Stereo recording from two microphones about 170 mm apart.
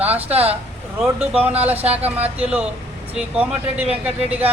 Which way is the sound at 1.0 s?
5° right (ahead or behind).